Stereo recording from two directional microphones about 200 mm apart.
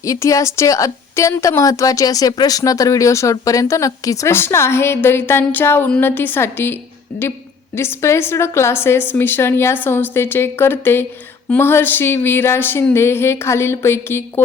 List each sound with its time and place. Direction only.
0.0 s a woman's voice: 15° left (ahead or behind)
7.1 s speech: 55° left (ahead or behind)
7.8 s a woman's voice: 15° left (ahead or behind)